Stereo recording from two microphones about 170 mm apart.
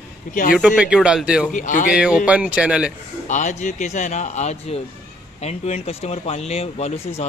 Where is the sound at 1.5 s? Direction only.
50° left (ahead or behind).